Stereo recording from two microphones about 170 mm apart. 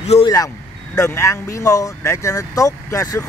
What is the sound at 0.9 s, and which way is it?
Speech, 15° left (ahead or behind).